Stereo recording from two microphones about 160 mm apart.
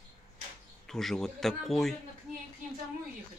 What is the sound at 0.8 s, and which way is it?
Speech, centre (ahead or behind).